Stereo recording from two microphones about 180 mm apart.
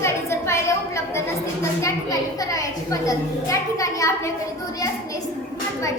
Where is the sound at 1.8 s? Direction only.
15° left (ahead or behind).